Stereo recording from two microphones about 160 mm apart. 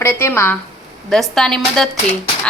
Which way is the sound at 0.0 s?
15° left (ahead or behind).